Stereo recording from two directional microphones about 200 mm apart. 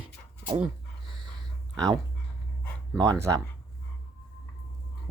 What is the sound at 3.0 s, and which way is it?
Speech, 15° right (ahead or behind).